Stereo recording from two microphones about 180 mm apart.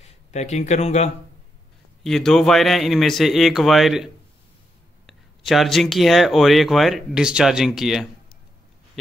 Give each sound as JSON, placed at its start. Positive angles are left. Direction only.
{"t": 0.0, "sound": "speech", "side_deg": 40}
{"t": 2.0, "sound": "speech", "side_deg": 0}
{"t": 9.0, "sound": "a sound", "side_deg": 0}